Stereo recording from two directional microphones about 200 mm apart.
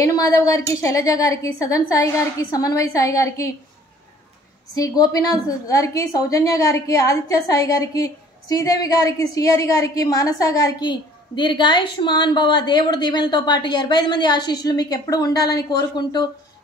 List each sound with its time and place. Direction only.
0.0 s a woman's voice: 15° left (ahead or behind)
4.7 s a woman's voice: 20° left (ahead or behind)